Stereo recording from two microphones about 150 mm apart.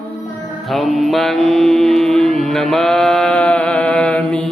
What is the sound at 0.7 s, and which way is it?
Mantra, centre (ahead or behind).